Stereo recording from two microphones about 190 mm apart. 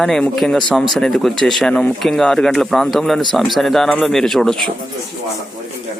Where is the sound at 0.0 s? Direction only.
Centre (ahead or behind).